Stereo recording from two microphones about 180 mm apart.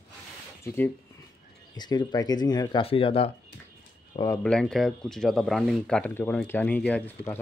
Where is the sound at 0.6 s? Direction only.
15° left (ahead or behind); by 3.3 s 30° left (ahead or behind).